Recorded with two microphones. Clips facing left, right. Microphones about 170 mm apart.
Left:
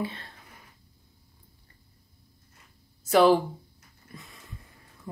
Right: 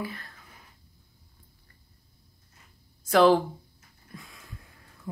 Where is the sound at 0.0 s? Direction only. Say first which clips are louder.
Left 3 dB; 25° left (ahead or behind).